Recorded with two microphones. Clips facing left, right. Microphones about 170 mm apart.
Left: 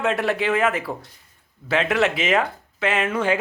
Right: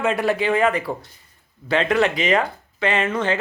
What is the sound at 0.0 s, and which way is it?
Speech, centre (ahead or behind).